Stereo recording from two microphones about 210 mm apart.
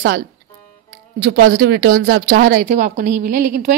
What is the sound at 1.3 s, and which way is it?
A woman's voice, 45° right (ahead or behind).